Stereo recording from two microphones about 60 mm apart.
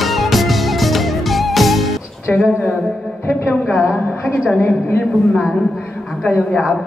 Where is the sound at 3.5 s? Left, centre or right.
Centre.